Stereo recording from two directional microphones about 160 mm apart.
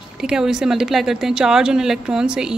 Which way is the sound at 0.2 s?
5° right (ahead or behind).